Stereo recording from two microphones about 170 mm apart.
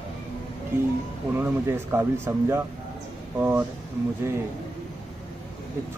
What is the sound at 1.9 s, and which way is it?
Speech, 15° right (ahead or behind).